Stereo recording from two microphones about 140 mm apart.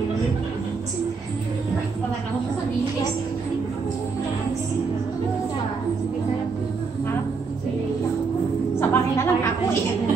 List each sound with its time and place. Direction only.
8.7 s music: 20° left (ahead or behind)